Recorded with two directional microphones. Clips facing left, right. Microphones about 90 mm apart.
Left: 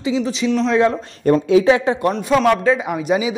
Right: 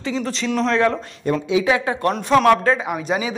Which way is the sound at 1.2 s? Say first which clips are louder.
Left 6 dB; 45° left (ahead or behind).